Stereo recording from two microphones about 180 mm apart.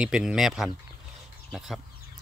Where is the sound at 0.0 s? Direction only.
5° right (ahead or behind).